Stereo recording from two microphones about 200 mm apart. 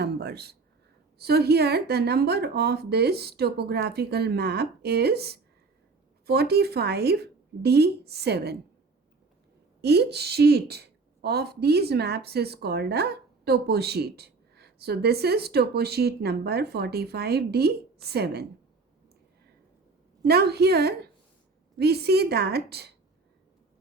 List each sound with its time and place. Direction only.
0.0 s a woman's voice: 55° right (ahead or behind)
9.8 s a woman's voice: 55° right (ahead or behind)
20.2 s a woman's voice: 55° right (ahead or behind)